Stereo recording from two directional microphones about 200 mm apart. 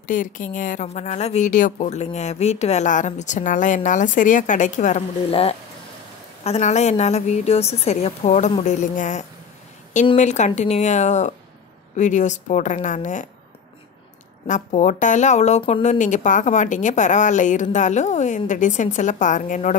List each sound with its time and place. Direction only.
0.0 s a woman's voice: 40° left (ahead or behind)
14.5 s a woman's voice: 35° left (ahead or behind)